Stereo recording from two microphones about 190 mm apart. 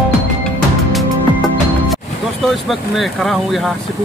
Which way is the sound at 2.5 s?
Centre (ahead or behind).